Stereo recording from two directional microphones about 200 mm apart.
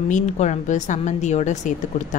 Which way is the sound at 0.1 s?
35° left (ahead or behind).